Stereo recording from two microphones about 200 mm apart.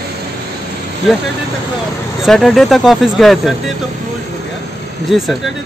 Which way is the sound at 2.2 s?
Centre (ahead or behind).